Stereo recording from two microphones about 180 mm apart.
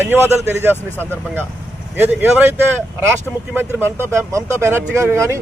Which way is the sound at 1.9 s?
10° right (ahead or behind).